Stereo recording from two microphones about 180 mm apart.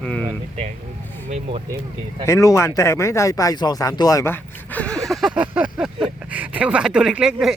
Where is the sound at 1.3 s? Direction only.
35° right (ahead or behind).